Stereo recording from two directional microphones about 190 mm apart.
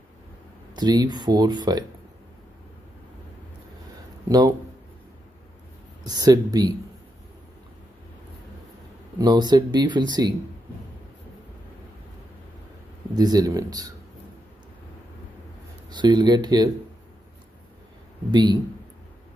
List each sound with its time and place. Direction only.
0.7 s speech: 20° right (ahead or behind)
6.0 s speech: 20° right (ahead or behind)
9.2 s speech: 20° right (ahead or behind)
13.1 s speech: 20° right (ahead or behind)
15.9 s speech: 20° right (ahead or behind)
18.3 s speech: 25° right (ahead or behind)